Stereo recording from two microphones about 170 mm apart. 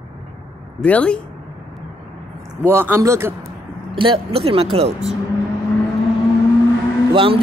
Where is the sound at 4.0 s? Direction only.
30° right (ahead or behind).